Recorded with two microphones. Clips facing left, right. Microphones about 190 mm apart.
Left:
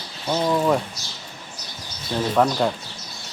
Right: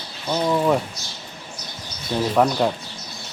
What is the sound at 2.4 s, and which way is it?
Speech, 5° right (ahead or behind).